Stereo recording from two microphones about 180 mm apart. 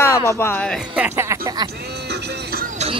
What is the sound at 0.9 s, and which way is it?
Speech, 10° right (ahead or behind).